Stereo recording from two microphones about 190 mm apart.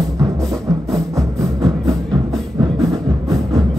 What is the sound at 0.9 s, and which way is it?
Music, 20° right (ahead or behind).